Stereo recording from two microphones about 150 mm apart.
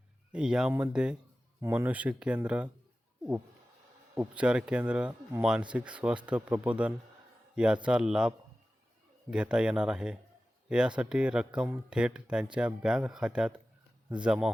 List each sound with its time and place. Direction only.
0.3 s speech: 5° right (ahead or behind)
4.1 s a man's voice: 10° right (ahead or behind)
9.3 s speech: 5° right (ahead or behind)